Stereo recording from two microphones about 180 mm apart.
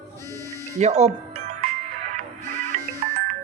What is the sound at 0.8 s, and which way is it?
Music, 35° right (ahead or behind).